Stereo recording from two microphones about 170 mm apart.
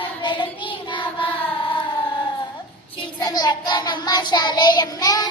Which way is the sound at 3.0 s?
25° left (ahead or behind).